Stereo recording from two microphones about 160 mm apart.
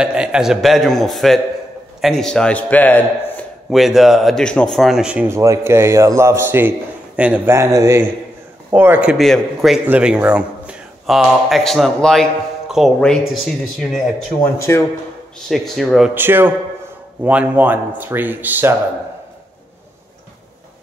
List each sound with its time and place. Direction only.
0.0 s a man's voice: 5° right (ahead or behind); by 3.4 s 10° left (ahead or behind)
3.7 s speech: centre (ahead or behind)
9.2 s a man's voice: centre (ahead or behind)
14.7 s speech: 20° left (ahead or behind)
15.4 s a man's voice: centre (ahead or behind)
16.2 s speech: 15° right (ahead or behind)